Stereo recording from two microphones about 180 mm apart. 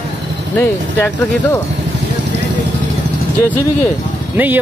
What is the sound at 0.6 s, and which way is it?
Speech, 10° left (ahead or behind).